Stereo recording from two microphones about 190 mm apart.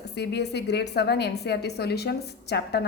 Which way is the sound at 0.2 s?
60° left (ahead or behind).